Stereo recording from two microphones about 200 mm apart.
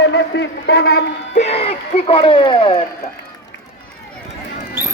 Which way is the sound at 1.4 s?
30° left (ahead or behind).